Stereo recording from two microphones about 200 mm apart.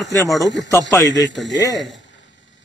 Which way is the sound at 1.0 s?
65° left (ahead or behind).